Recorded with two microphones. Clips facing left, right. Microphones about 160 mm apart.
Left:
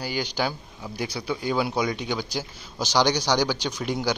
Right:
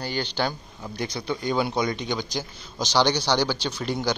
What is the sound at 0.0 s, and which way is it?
A man's voice, 10° left (ahead or behind).